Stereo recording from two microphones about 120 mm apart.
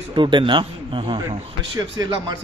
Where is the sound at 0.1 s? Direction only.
40° right (ahead or behind).